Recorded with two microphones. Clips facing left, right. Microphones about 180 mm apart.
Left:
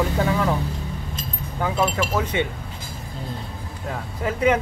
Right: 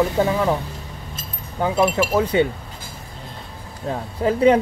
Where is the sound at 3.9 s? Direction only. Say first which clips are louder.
Right 6 dB; 30° right (ahead or behind).